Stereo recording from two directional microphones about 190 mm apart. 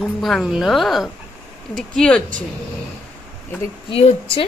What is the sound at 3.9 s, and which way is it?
Speech, 30° left (ahead or behind).